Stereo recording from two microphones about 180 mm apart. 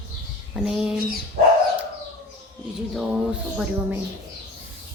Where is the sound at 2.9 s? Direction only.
5° right (ahead or behind).